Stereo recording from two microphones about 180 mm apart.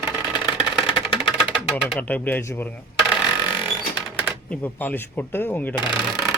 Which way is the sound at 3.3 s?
25° left (ahead or behind).